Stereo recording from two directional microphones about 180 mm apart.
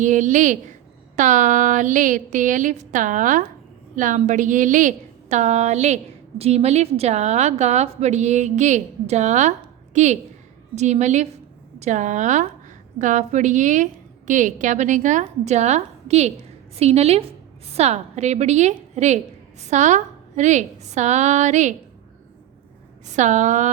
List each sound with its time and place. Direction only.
0.0 s a woman's voice: 45° right (ahead or behind)
23.1 s a woman's voice: 40° right (ahead or behind)